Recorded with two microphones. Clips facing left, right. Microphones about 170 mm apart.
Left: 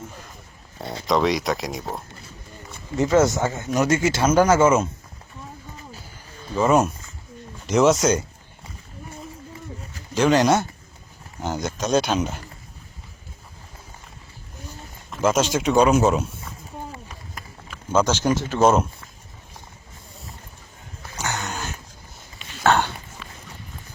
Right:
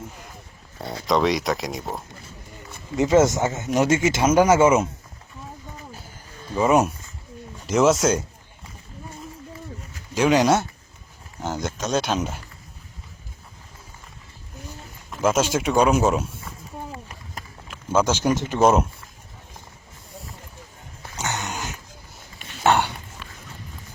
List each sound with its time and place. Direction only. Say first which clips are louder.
1.0 s speech: even; centre (ahead or behind)
2.9 s speech: right 1 dB; 20° right (ahead or behind)
6.6 s speech: even; 5° right (ahead or behind)
10.2 s speech: even; 5° right (ahead or behind)
15.1 s speech: even; 5° right (ahead or behind)
17.7 s speech: even; 10° right (ahead or behind)
21.2 s dog: even; 20° right (ahead or behind)
22.6 s burping: even; 15° right (ahead or behind)